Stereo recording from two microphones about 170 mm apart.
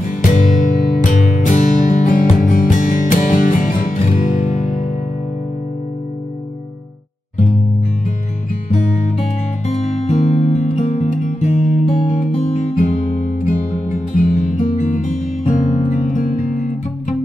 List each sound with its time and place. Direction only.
0.1 s music: 50° left (ahead or behind)
9.7 s music: 45° left (ahead or behind)